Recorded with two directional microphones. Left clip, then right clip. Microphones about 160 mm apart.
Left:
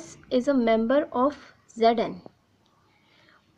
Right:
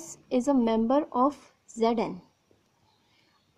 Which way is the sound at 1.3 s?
55° right (ahead or behind).